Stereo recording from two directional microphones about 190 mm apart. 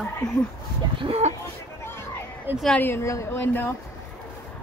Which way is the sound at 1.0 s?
30° right (ahead or behind).